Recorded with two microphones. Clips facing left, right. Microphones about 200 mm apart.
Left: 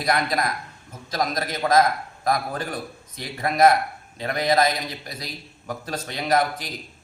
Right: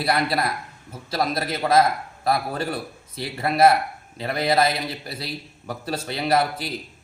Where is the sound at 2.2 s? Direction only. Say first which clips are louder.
Right 1 dB; 30° right (ahead or behind).